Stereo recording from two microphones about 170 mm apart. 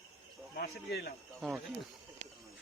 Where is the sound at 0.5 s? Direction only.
70° left (ahead or behind).